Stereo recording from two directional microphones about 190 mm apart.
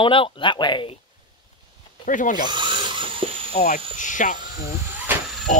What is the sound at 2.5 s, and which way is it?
Drill, 25° right (ahead or behind).